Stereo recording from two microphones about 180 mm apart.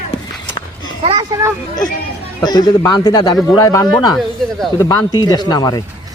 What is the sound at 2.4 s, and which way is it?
Speech, 20° left (ahead or behind).